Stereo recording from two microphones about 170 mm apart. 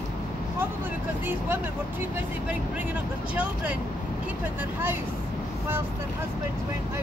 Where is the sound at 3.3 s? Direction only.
10° right (ahead or behind).